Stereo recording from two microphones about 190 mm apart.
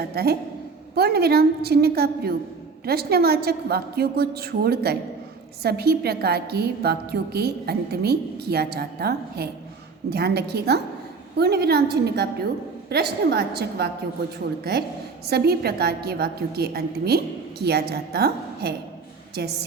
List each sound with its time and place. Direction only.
0.1 s a woman's voice: 55° right (ahead or behind)